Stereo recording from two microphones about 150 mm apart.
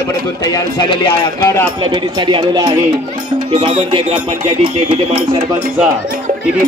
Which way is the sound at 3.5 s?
40° right (ahead or behind).